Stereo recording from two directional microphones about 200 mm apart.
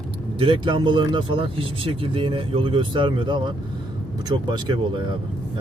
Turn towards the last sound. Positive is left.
turn(degrees=-25)  # may be behind; listen again after turning